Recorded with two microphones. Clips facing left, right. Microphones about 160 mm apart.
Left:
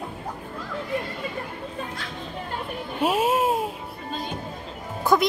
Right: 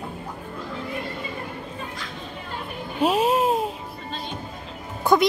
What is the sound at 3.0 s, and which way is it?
Babbling, 5° left (ahead or behind).